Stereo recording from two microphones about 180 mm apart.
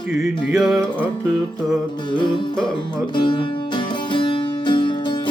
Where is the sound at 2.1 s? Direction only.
25° left (ahead or behind).